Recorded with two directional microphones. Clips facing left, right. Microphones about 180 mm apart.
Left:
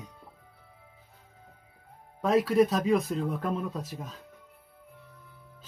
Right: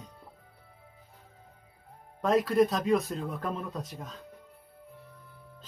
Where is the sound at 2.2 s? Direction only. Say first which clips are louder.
Left 1 dB; centre (ahead or behind).